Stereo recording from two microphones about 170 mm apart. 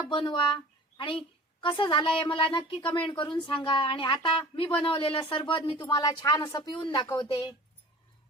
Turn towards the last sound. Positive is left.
turn(degrees=25)  # may be behind; listen again after turning